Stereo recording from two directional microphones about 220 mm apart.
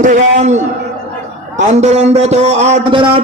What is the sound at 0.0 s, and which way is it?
Speech, 35° right (ahead or behind).